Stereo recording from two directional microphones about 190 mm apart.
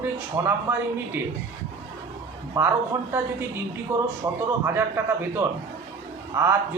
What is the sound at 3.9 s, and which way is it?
Speech, 10° right (ahead or behind).